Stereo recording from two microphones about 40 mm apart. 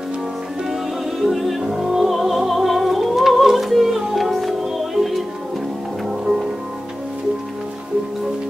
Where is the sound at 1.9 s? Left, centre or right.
Centre.